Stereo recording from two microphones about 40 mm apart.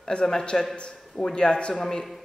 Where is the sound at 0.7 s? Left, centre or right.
Left.